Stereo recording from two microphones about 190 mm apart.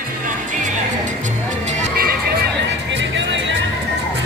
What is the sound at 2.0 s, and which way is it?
Music, 55° right (ahead or behind).